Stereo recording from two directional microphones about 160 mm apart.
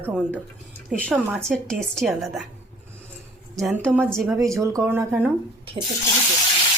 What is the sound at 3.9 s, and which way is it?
A woman's voice, 10° right (ahead or behind).